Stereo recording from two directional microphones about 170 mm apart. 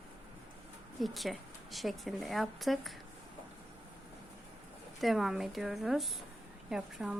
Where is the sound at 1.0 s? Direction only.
Centre (ahead or behind).